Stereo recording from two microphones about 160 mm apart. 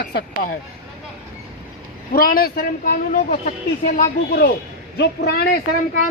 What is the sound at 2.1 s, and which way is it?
Speech, 65° left (ahead or behind).